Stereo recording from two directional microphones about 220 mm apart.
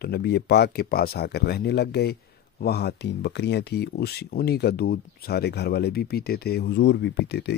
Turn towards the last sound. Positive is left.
turn(degrees=50)  # may be behind; listen again after turning